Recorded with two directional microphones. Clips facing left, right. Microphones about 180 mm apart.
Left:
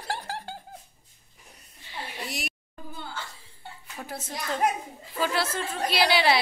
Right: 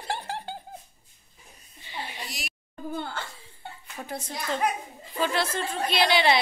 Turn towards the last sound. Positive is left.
turn(degrees=5)  # may be behind; listen again after turning